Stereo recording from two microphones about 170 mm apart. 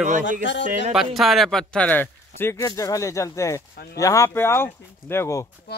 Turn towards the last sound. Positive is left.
turn(degrees=15)  # may be behind; listen again after turning